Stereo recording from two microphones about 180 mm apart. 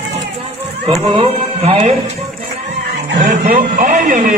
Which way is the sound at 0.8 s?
30° right (ahead or behind).